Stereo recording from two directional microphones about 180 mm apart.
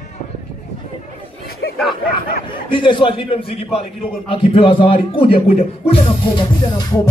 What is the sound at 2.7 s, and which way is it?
Music, 25° left (ahead or behind).